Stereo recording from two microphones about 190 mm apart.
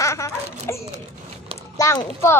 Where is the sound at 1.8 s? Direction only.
15° left (ahead or behind).